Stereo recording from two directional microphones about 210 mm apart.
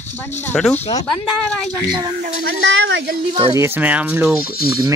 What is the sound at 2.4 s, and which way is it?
Speech, 60° right (ahead or behind).